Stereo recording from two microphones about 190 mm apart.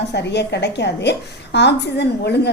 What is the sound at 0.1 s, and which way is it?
A woman's voice, 65° left (ahead or behind).